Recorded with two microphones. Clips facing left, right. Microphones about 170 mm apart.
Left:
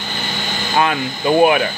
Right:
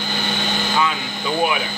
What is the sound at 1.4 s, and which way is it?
Speech, 55° left (ahead or behind).